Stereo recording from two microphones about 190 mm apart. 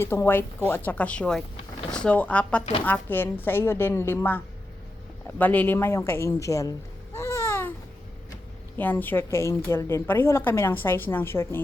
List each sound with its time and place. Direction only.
0.0 s a woman's voice: 10° left (ahead or behind)
5.4 s a woman's voice: 10° left (ahead or behind)
7.2 s babbling: 15° left (ahead or behind)
8.8 s a woman's voice: 10° left (ahead or behind)